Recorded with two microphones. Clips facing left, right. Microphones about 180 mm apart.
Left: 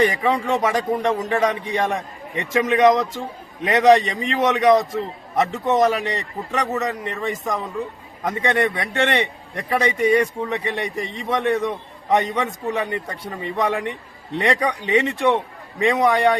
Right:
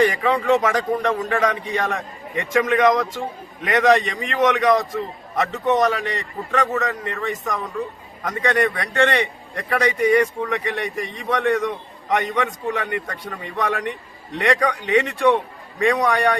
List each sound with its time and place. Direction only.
0.0 s a man's voice: 25° left (ahead or behind)